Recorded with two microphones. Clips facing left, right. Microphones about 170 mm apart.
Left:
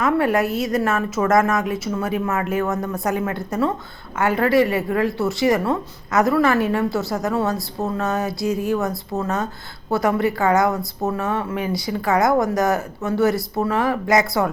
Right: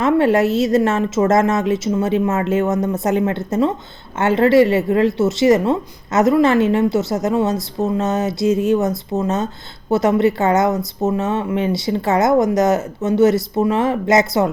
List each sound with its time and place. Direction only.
0.0 s a woman's voice: 25° right (ahead or behind)